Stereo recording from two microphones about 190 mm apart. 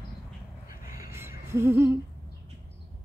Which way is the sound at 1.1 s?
15° right (ahead or behind).